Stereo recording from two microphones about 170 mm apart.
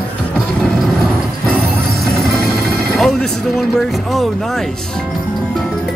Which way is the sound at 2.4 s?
Centre (ahead or behind).